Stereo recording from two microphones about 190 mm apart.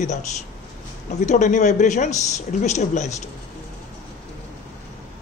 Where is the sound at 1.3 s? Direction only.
40° left (ahead or behind).